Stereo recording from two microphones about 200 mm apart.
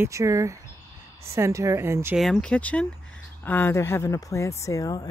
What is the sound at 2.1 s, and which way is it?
Speech, centre (ahead or behind).